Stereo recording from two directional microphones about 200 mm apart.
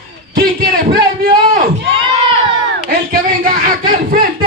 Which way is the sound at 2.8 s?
45° right (ahead or behind).